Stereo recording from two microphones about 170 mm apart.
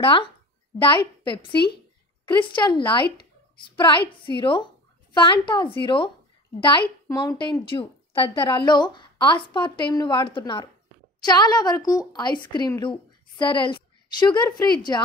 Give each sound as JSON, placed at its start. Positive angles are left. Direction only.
{"t": 0.0, "sound": "a woman's voice", "side_deg": 30}